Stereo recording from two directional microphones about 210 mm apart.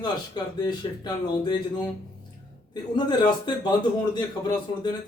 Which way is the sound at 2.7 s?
20° left (ahead or behind).